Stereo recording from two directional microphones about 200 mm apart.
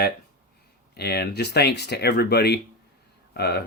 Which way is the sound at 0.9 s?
55° left (ahead or behind).